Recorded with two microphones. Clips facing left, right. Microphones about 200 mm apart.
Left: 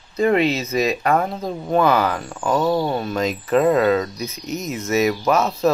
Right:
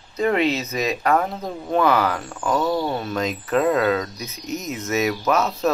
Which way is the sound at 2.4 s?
10° left (ahead or behind).